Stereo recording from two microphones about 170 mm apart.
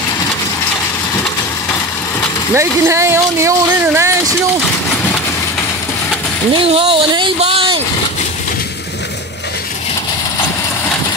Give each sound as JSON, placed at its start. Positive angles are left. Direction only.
{"t": 2.5, "sound": "speech", "side_deg": -15}
{"t": 6.5, "sound": "speech", "side_deg": -30}